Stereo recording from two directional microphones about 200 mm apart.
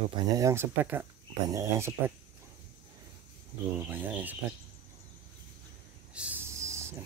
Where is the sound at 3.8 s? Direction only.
10° right (ahead or behind).